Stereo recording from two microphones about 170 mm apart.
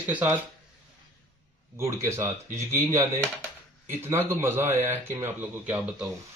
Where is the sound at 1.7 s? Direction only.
15° right (ahead or behind).